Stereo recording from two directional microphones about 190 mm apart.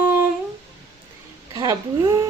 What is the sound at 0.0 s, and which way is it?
Humming, 10° right (ahead or behind).